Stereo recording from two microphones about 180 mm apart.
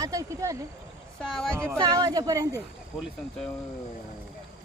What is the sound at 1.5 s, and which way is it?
A woman's voice, 10° right (ahead or behind).